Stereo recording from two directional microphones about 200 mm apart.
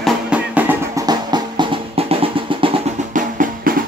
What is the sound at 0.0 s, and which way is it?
Music, 5° right (ahead or behind).